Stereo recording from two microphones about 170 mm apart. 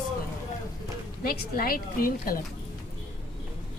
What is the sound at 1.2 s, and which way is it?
Speech, 60° left (ahead or behind).